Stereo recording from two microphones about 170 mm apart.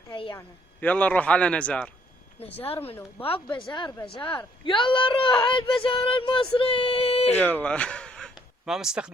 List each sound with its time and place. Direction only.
0.1 s a sound: 30° left (ahead or behind)
0.3 s a man's voice: 10° left (ahead or behind)
2.4 s a woman's voice: 35° left (ahead or behind)
7.3 s speech: 10° left (ahead or behind)